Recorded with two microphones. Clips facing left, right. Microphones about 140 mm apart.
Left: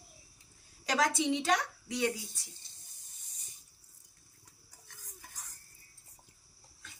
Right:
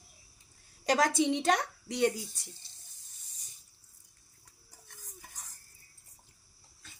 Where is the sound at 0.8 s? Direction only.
45° right (ahead or behind).